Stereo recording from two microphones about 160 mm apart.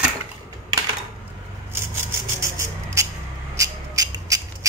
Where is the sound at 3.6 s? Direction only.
20° right (ahead or behind).